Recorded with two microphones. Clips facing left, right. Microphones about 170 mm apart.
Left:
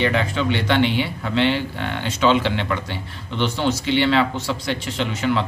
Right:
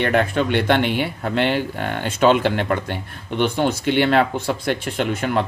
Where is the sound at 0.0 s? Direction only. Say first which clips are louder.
Right 2 dB; 50° right (ahead or behind).